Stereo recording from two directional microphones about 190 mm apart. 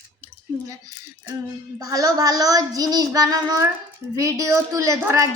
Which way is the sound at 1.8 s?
20° right (ahead or behind).